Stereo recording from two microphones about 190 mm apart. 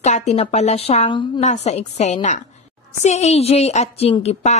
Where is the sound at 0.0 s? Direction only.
35° left (ahead or behind).